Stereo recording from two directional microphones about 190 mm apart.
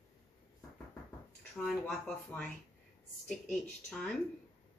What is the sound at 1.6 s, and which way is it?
Speech, 5° left (ahead or behind).